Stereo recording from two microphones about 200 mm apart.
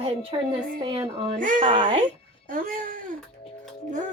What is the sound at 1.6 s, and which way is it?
Speech, 25° right (ahead or behind).